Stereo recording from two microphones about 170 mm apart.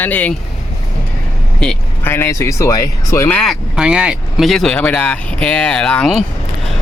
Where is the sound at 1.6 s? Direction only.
5° left (ahead or behind).